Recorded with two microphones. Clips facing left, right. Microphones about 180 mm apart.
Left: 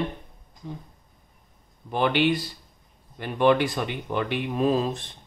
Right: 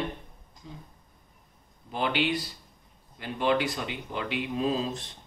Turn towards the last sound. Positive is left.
turn(degrees=55)  # may be behind; listen again after turning